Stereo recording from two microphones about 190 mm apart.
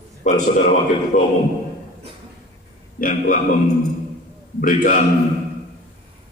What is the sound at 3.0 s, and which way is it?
Speech, 45° left (ahead or behind).